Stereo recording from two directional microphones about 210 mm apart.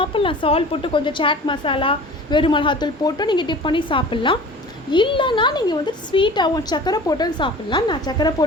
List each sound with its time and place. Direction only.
0.0 s a woman's voice: 25° left (ahead or behind)